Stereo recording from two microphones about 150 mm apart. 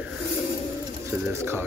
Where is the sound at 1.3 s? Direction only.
15° right (ahead or behind).